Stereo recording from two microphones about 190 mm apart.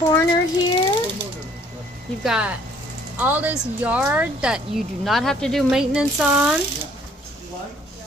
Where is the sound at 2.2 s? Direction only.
5° right (ahead or behind).